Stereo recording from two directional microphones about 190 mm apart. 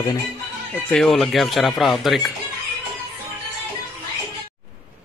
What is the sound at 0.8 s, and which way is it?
Speech, 5° left (ahead or behind).